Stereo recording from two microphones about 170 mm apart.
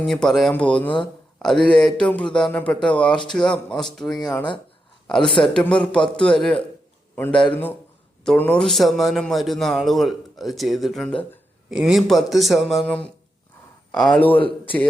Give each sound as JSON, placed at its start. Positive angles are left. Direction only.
{"t": 0.0, "sound": "a man's voice", "side_deg": 5}
{"t": 5.2, "sound": "a woman's voice", "side_deg": 30}
{"t": 5.5, "sound": "a man's voice", "side_deg": 5}